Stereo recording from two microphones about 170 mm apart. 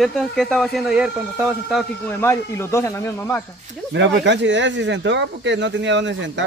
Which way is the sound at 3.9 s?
90° right.